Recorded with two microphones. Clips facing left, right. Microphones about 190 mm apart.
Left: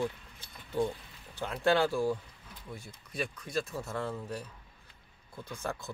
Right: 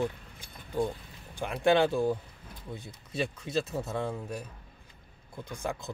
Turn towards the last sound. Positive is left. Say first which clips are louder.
# right 2 dB
turn(degrees=-15)  # may be behind; listen again after turning